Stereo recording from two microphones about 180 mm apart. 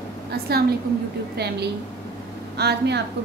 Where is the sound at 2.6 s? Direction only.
65° right (ahead or behind).